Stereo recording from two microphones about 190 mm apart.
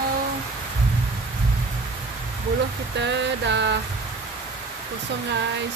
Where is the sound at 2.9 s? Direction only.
65° right (ahead or behind).